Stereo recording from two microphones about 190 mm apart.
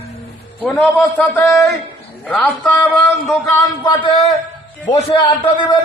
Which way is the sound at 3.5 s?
20° left (ahead or behind).